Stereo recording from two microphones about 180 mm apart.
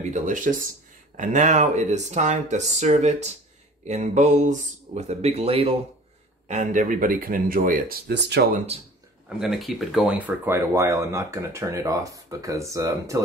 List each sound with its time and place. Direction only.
0.1 s speech: 45° right (ahead or behind)
6.4 s speech: 40° right (ahead or behind); by 8.5 s 65° right (ahead or behind)
8.7 s speech: 35° right (ahead or behind)
9.4 s speech: centre (ahead or behind); by 13.2 s 20° right (ahead or behind)